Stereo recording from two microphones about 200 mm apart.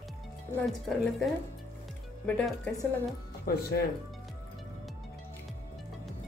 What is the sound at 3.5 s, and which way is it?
Speech, 50° left (ahead or behind).